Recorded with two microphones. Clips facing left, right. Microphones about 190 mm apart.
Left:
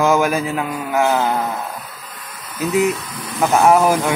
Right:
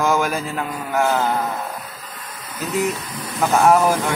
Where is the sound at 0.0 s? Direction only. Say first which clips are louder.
Left 4 dB; 10° left (ahead or behind).